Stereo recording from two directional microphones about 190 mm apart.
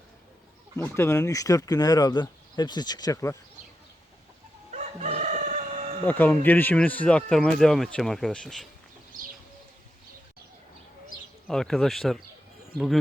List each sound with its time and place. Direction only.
0.8 s speech: 15° left (ahead or behind)
4.7 s chicken: 35° right (ahead or behind)
6.1 s speech: 10° left (ahead or behind)
11.4 s speech: centre (ahead or behind)